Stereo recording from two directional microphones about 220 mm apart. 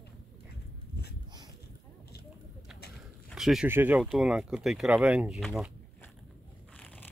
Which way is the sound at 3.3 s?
Centre (ahead or behind).